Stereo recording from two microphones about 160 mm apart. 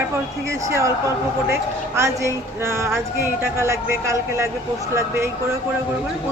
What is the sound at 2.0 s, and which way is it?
Speech, 15° right (ahead or behind).